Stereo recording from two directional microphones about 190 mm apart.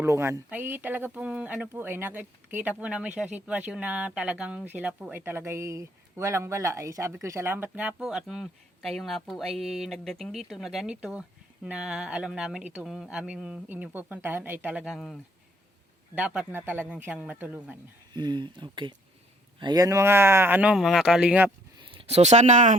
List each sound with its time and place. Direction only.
0.0 s speech: 15° right (ahead or behind)
18.1 s speech: 25° right (ahead or behind); by 21.5 s 5° right (ahead or behind)
21.8 s speech: 30° right (ahead or behind)